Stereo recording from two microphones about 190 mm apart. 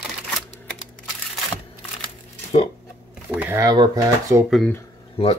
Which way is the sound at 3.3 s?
10° right (ahead or behind).